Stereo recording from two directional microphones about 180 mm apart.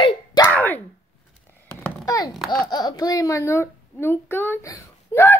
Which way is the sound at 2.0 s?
20° left (ahead or behind).